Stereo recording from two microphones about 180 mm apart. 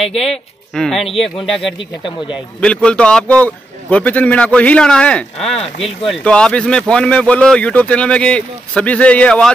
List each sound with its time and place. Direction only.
0.1 s speech: centre (ahead or behind)
1.8 s speech: 25° left (ahead or behind)
2.6 s speech: 5° left (ahead or behind)